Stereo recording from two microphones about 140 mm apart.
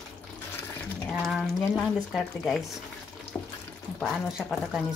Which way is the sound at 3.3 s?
15° left (ahead or behind).